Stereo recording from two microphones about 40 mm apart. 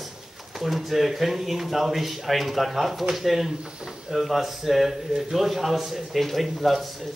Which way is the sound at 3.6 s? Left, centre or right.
Centre.